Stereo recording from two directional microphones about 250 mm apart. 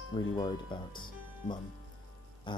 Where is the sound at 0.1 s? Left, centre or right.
Centre.